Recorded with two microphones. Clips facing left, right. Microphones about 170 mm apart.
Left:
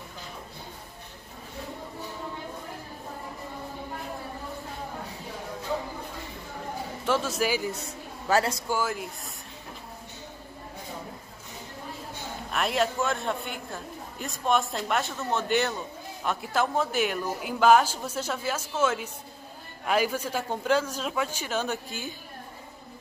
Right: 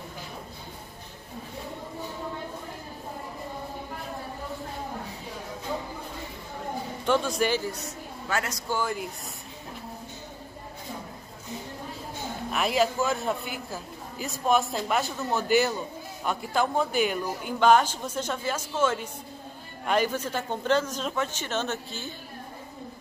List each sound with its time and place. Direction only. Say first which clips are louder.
7.1 s a man's voice: right 2 dB; 5° left (ahead or behind)
7.8 s a woman's voice: even; 30° left (ahead or behind)
8.6 s a man's voice: even; 5° left (ahead or behind)
12.4 s a man's voice: right 2 dB; centre (ahead or behind)